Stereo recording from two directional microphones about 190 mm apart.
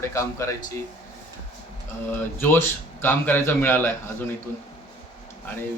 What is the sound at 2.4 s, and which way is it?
A man's voice, 10° left (ahead or behind).